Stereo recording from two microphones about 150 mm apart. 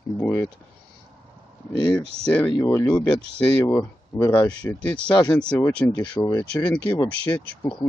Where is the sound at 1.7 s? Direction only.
25° left (ahead or behind).